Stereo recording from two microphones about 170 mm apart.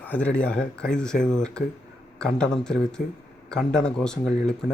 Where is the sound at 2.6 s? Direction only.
5° left (ahead or behind).